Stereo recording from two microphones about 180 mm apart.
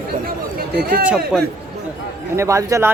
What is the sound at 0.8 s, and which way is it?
Speech, 60° right (ahead or behind).